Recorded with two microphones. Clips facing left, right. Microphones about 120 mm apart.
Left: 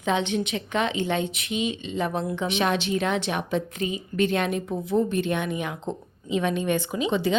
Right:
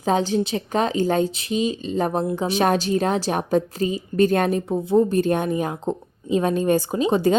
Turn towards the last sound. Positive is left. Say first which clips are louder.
# right 5 dB
turn(degrees=-40)  # may be behind; listen again after turning